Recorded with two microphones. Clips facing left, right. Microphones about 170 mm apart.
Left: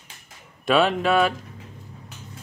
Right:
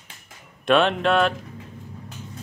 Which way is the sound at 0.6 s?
5° left (ahead or behind).